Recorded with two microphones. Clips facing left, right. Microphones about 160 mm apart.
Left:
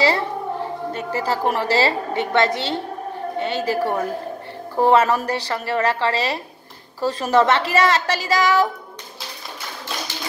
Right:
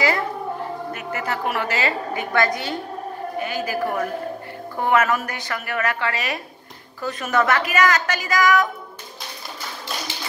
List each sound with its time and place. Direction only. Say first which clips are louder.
0.9 s a woman's voice: left 6 dB; 30° left (ahead or behind)